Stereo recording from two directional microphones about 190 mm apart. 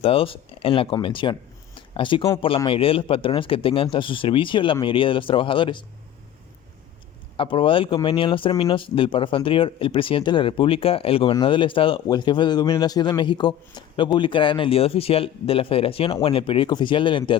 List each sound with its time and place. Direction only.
0.0 s speech: 30° left (ahead or behind)
7.3 s speech: 25° left (ahead or behind)